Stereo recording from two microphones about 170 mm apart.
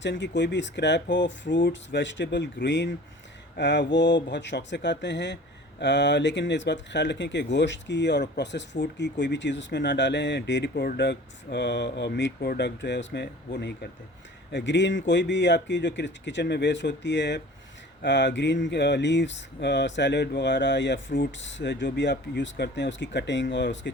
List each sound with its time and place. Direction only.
0.0 s speech: 90° left
14.5 s speech: 90° left